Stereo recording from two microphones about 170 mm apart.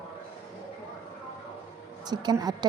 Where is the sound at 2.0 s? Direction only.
25° right (ahead or behind).